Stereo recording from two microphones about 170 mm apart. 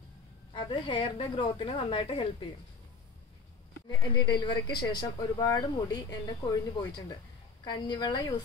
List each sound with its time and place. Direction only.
0.5 s a woman's voice: 30° left (ahead or behind)
4.0 s speech: 25° left (ahead or behind)